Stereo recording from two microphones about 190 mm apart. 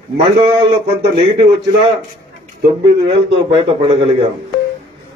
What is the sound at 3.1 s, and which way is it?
A man's voice, 30° right (ahead or behind).